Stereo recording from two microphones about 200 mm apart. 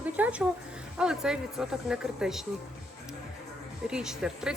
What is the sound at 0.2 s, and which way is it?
A woman's voice, 5° right (ahead or behind).